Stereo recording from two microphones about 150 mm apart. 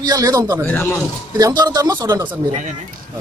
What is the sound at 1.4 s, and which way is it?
Speech, 25° right (ahead or behind).